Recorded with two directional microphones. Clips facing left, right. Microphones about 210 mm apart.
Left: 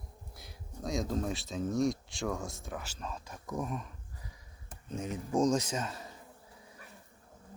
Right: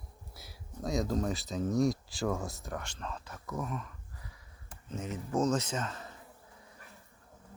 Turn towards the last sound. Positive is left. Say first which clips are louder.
# even
turn(degrees=10)  # may be behind; listen again after turning